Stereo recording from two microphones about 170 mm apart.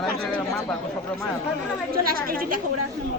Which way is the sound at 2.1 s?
60° right (ahead or behind).